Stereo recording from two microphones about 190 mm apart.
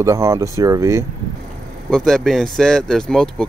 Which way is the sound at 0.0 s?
15° right (ahead or behind).